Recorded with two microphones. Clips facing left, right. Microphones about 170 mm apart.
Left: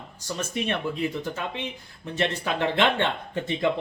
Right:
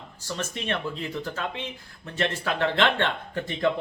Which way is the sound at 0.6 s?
10° left (ahead or behind).